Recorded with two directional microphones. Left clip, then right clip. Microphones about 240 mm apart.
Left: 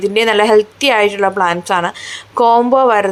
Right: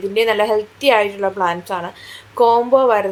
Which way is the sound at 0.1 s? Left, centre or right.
Left.